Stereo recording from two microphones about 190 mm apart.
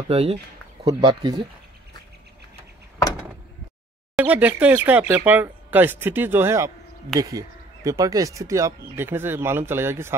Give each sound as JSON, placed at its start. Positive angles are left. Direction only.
{"t": 0.1, "sound": "speech", "side_deg": -30}
{"t": 0.8, "sound": "speech", "side_deg": -20}
{"t": 4.2, "sound": "speech", "side_deg": -10}